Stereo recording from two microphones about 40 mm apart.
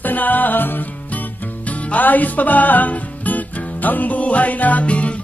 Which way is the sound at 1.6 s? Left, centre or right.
Left.